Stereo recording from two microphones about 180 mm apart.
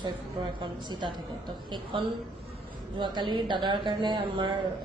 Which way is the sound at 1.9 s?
30° right (ahead or behind).